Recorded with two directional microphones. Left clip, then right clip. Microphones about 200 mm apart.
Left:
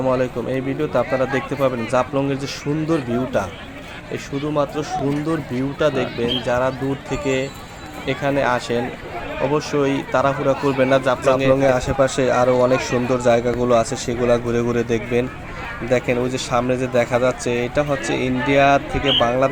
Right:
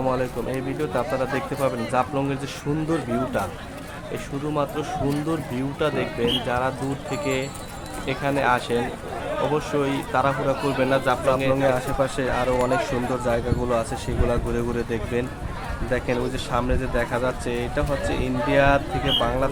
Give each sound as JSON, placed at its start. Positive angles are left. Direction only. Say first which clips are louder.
{"t": 0.1, "sound": "speech", "louder": "left 5 dB", "side_deg": 15}
{"t": 4.5, "sound": "speech", "louder": "left 4 dB", "side_deg": 15}